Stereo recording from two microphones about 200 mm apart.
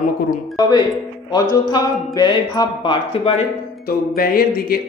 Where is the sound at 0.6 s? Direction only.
20° left (ahead or behind).